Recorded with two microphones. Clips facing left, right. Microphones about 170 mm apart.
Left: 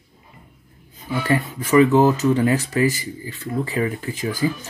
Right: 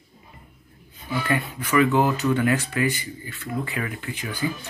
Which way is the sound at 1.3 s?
40° left (ahead or behind).